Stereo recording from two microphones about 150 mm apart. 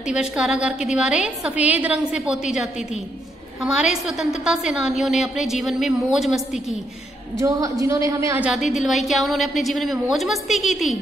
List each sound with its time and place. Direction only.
0.1 s a woman's voice: 5° right (ahead or behind)
7.3 s a woman's voice: 25° right (ahead or behind)
8.4 s a woman's voice: 5° right (ahead or behind)